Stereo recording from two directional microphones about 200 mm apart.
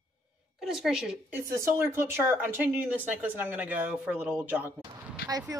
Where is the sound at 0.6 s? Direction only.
Centre (ahead or behind).